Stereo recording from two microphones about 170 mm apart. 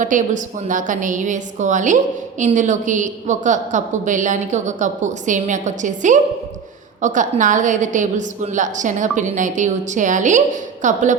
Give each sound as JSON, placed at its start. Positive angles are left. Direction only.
{"t": 0.0, "sound": "a woman's voice", "side_deg": -50}